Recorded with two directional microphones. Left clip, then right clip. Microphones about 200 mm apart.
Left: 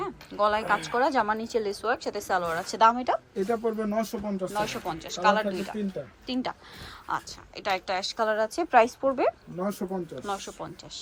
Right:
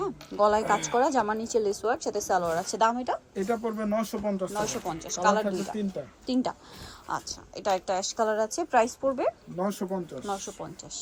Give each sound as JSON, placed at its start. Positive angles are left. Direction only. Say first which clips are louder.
{"t": 0.0, "sound": "a woman's voice", "louder": "right 2 dB", "side_deg": -20}
{"t": 3.3, "sound": "speech", "louder": "left 2 dB", "side_deg": 0}
{"t": 4.5, "sound": "a woman's voice", "louder": "left 1 dB", "side_deg": -15}
{"t": 10.2, "sound": "a woman's voice", "louder": "even", "side_deg": -15}